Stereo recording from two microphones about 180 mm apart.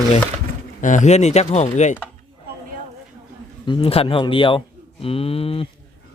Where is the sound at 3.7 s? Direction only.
30° left (ahead or behind).